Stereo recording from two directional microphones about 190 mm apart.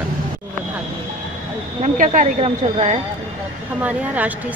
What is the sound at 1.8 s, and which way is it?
A woman's voice, 40° right (ahead or behind).